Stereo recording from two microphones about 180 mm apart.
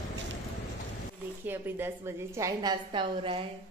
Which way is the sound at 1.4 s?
10° right (ahead or behind).